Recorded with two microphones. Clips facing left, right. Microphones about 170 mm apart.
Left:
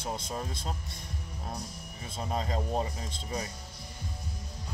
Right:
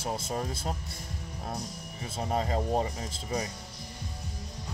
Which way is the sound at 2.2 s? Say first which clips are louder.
Right 3 dB; 45° right (ahead or behind).